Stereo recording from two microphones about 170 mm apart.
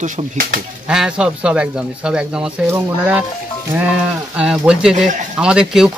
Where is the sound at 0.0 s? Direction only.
60° right (ahead or behind).